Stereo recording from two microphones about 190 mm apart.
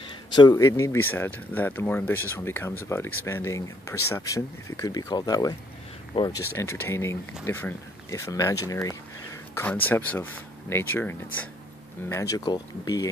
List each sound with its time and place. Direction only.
0.4 s speech: 20° left (ahead or behind)